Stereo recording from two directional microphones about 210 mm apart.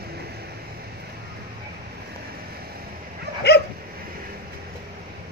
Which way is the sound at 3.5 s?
50° left (ahead or behind).